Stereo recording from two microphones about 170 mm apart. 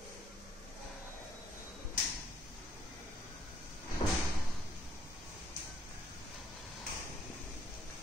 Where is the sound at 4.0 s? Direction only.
40° left (ahead or behind).